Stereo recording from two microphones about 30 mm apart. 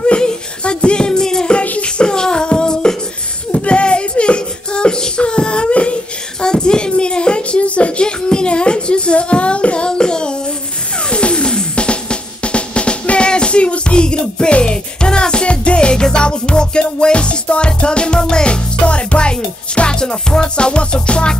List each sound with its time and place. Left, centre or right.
0.2 s music: left
1.6 s music: left
2.0 s beatboxing: left
3.5 s child singing: left
6.4 s a sound: left
7.6 s music: left
8.0 s child singing: left
9.8 s child singing: left
11.1 s music: left